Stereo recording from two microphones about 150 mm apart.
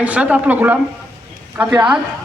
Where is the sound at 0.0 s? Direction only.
10° right (ahead or behind).